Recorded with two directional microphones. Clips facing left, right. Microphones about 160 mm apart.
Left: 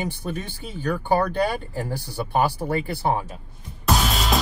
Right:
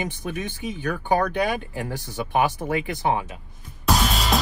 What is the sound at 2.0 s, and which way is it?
Speech, 20° right (ahead or behind).